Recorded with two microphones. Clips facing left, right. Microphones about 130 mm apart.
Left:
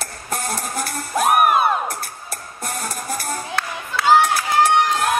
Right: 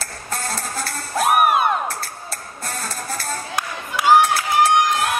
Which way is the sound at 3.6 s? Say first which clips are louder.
Right 3 dB; 15° right (ahead or behind).